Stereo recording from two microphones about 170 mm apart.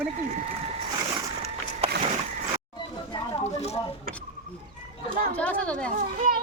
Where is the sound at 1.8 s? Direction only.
35° right (ahead or behind).